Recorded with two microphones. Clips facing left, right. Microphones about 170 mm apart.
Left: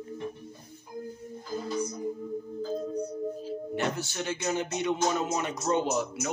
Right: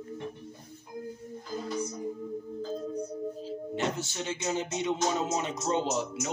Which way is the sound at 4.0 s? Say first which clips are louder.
Left 2 dB; 20° right (ahead or behind).